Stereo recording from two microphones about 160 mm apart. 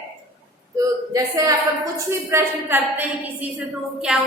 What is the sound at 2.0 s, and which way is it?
A woman's voice, 15° right (ahead or behind).